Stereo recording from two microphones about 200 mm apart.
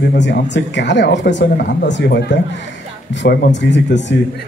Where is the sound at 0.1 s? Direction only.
60° left (ahead or behind).